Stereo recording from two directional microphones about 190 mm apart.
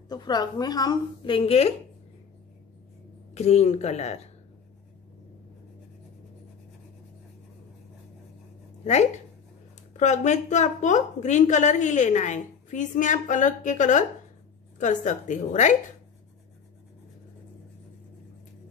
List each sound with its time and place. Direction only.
0.1 s a woman's voice: 20° left (ahead or behind)
3.3 s a woman's voice: 35° left (ahead or behind)
8.8 s a woman's voice: 35° left (ahead or behind)